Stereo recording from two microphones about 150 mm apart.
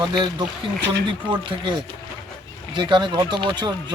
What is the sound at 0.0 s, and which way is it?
Speech, 30° right (ahead or behind).